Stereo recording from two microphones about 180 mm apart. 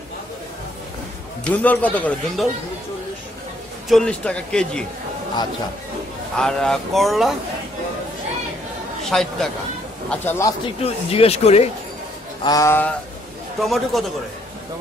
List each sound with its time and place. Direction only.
1.4 s speech: 10° left (ahead or behind)
3.9 s speech: 5° left (ahead or behind)
6.3 s speech: 5° left (ahead or behind)
9.0 s speech: centre (ahead or behind)
10.0 s speech: 10° left (ahead or behind)
10.8 s speech: 35° left (ahead or behind)
12.4 s speech: 15° left (ahead or behind)
13.6 s speech: centre (ahead or behind)